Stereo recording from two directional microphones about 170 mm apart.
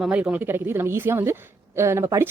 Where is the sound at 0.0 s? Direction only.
5° right (ahead or behind).